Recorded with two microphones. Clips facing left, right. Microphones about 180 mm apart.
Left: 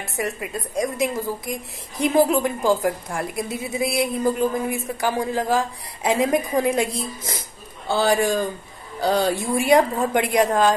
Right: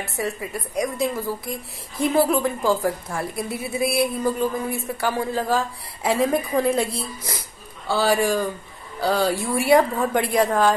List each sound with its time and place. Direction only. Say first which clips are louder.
0.1 s a woman's voice: left 2 dB; 20° left (ahead or behind)